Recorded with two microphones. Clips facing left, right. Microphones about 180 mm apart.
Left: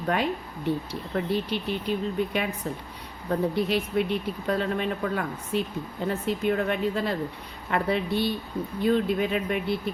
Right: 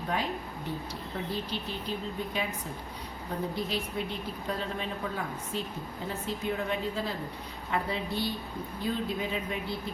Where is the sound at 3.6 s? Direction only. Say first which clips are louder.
Left 8 dB; 65° left (ahead or behind).